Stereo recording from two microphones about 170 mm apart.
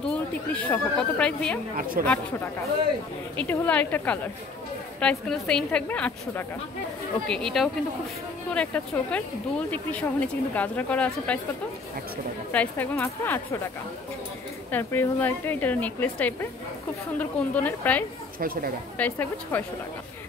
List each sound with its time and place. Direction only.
0.0 s speech: 5° left (ahead or behind)
1.8 s speech: 55° right (ahead or behind)
3.3 s speech: 10° left (ahead or behind)
12.5 s speech: 10° left (ahead or behind)
14.7 s speech: 10° left (ahead or behind)
18.4 s speech: 60° right (ahead or behind)
18.9 s speech: 10° left (ahead or behind)